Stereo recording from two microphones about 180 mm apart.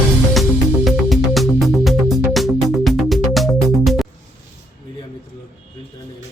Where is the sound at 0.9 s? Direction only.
Centre (ahead or behind).